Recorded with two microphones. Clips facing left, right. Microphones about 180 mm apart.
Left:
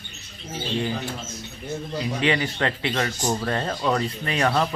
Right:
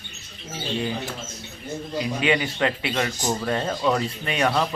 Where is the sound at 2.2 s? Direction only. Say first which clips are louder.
Right 1 dB; 20° right (ahead or behind).